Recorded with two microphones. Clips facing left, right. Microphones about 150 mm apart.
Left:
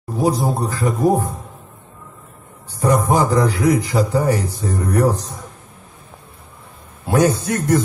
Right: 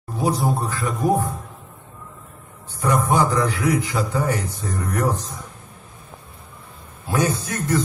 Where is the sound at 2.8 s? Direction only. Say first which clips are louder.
Left 3 dB; 35° left (ahead or behind).